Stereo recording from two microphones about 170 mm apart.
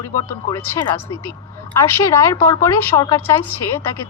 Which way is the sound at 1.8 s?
15° left (ahead or behind).